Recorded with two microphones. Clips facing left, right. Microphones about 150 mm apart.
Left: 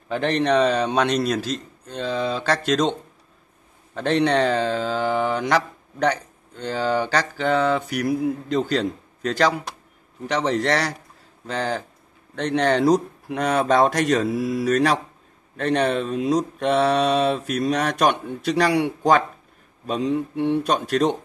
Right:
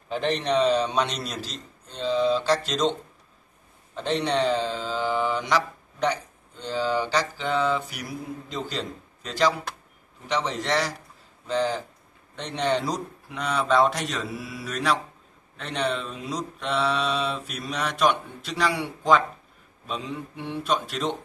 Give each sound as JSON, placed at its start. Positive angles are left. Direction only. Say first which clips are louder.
{"t": 0.1, "sound": "mantra", "louder": "left 4 dB", "side_deg": 60}
{"t": 3.9, "sound": "mantra", "louder": "left 5 dB", "side_deg": 60}
{"t": 20.0, "sound": "mantra", "louder": "left 12 dB", "side_deg": 40}